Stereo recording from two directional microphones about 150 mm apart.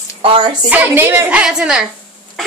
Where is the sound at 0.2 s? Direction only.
35° right (ahead or behind).